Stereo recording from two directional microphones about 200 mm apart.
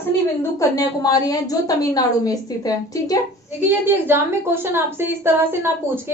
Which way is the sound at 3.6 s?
10° right (ahead or behind).